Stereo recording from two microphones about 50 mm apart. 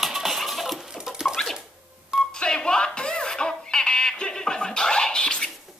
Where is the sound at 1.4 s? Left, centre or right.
Centre.